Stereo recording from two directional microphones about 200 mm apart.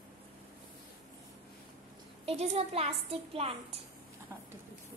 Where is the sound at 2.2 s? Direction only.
30° right (ahead or behind).